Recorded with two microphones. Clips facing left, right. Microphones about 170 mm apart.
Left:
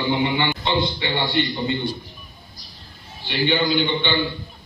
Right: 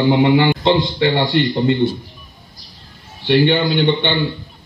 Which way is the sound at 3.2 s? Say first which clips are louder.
Right 7 dB; 60° right (ahead or behind).